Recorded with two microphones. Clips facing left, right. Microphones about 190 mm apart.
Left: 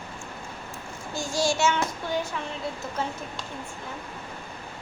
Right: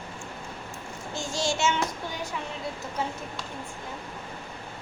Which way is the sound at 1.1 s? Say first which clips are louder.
Left 3 dB; 25° right (ahead or behind).